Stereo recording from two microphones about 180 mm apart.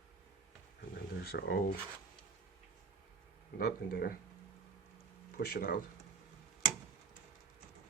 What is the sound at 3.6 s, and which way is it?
Speech, 55° left (ahead or behind).